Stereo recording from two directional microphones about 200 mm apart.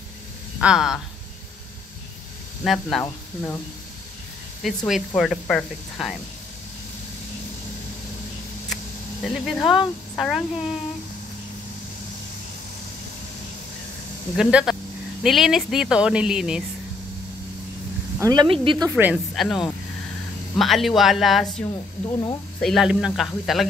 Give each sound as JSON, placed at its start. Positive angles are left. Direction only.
{"t": 0.6, "sound": "speech", "side_deg": -5}
{"t": 2.6, "sound": "speech", "side_deg": 0}
{"t": 4.6, "sound": "speech", "side_deg": 0}
{"t": 9.2, "sound": "speech", "side_deg": 0}
{"t": 14.3, "sound": "speech", "side_deg": -5}
{"t": 18.2, "sound": "speech", "side_deg": -20}
{"t": 18.9, "sound": "speech", "side_deg": -10}